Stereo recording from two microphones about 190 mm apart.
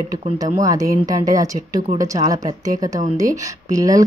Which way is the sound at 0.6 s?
20° right (ahead or behind).